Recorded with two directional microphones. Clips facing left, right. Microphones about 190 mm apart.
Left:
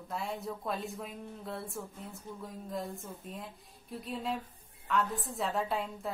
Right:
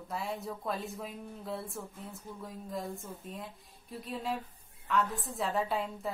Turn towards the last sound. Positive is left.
turn(degrees=0)  # may be behind; listen again after turning